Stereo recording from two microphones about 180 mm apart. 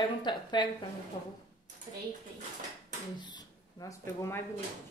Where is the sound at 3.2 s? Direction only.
25° left (ahead or behind).